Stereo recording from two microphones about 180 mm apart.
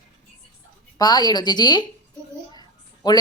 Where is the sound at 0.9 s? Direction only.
20° left (ahead or behind).